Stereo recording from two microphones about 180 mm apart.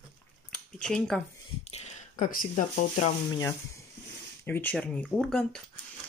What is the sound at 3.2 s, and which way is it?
Speech, 15° left (ahead or behind).